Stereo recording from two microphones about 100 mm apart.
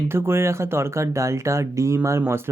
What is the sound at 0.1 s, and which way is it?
Speech, 25° right (ahead or behind).